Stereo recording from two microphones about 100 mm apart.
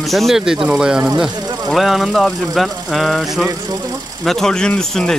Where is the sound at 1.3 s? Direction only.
40° right (ahead or behind).